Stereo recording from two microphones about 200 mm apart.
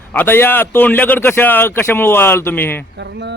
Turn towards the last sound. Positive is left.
turn(degrees=-60)  # may be behind; listen again after turning